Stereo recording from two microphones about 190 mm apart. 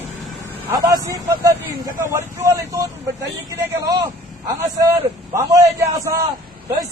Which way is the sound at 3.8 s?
20° right (ahead or behind).